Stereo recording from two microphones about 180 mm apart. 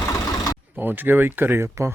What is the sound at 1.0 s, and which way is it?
Speech, 10° right (ahead or behind).